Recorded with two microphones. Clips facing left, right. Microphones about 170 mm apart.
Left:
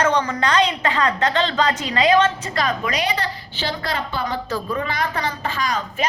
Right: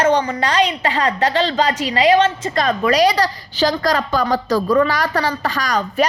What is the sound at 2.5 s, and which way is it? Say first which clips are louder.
Speech: right 7 dB; 55° right (ahead or behind).